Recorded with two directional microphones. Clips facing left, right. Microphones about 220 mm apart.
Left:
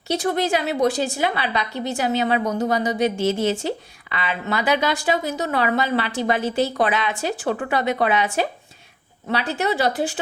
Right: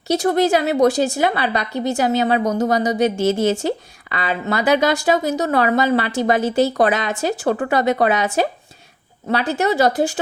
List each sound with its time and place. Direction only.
0.1 s a woman's voice: 40° right (ahead or behind)